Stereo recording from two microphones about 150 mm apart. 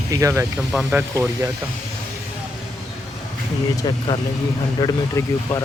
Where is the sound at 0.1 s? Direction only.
20° right (ahead or behind).